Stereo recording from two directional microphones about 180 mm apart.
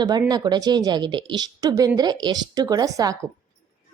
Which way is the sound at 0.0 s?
20° right (ahead or behind).